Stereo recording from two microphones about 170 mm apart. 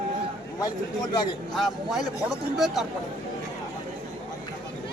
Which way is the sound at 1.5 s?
Centre (ahead or behind).